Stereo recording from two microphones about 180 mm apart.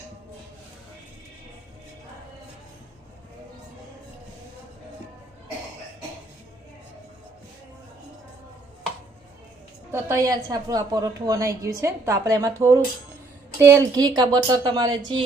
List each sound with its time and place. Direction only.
9.9 s a woman's voice: 15° right (ahead or behind)